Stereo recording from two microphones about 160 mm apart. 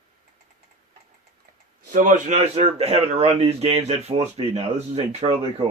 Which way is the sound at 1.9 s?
55° right (ahead or behind).